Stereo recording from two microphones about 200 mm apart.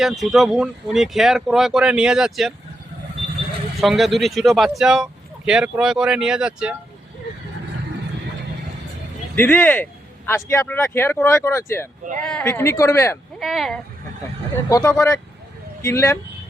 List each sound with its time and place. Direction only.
0.0 s speech: centre (ahead or behind)
3.8 s speech: centre (ahead or behind)
9.3 s speech: 10° left (ahead or behind)
13.4 s speech: centre (ahead or behind)
14.5 s speech: 15° left (ahead or behind)